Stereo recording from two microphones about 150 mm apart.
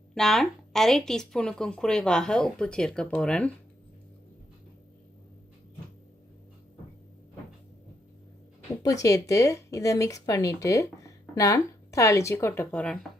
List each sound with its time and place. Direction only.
0.1 s a woman's voice: centre (ahead or behind)
8.8 s speech: 20° left (ahead or behind)